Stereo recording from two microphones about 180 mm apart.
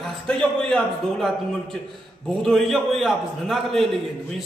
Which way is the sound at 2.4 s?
Centre (ahead or behind).